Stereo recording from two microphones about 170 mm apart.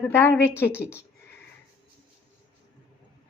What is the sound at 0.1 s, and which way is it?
Speech, 15° left (ahead or behind).